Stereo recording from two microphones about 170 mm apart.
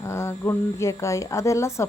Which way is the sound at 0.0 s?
15° left (ahead or behind).